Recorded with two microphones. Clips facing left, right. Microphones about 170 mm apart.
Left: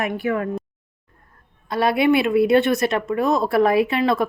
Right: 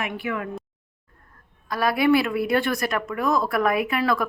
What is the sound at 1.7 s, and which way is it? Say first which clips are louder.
A woman's voice: left 2 dB; 25° left (ahead or behind).